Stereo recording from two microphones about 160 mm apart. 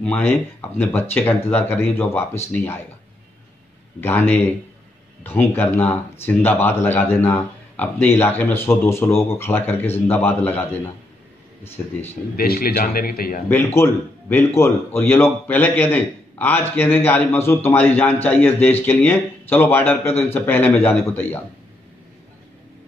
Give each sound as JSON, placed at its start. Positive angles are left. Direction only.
{"t": 0.0, "sound": "speech", "side_deg": 10}
{"t": 4.0, "sound": "speech", "side_deg": 10}
{"t": 12.4, "sound": "a man's voice", "side_deg": 70}
{"t": 13.7, "sound": "speech", "side_deg": 15}